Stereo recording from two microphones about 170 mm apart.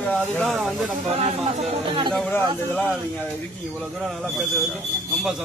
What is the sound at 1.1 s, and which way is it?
Speech, 40° right (ahead or behind).